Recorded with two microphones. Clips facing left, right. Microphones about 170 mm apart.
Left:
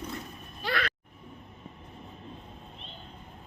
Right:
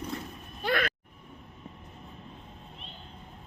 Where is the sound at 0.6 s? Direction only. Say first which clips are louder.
Right 3 dB; 50° right (ahead or behind).